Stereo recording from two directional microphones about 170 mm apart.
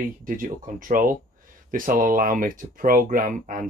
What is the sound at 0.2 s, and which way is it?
Speech, 50° right (ahead or behind).